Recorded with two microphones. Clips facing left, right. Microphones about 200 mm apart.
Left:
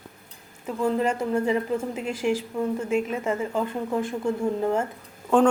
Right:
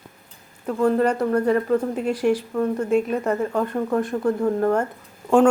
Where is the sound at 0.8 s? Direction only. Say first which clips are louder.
Right 5 dB; 45° right (ahead or behind).